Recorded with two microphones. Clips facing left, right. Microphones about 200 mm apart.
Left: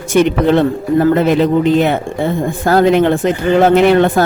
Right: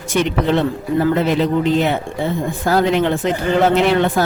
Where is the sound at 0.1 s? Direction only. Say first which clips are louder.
Left 6 dB; 50° left (ahead or behind).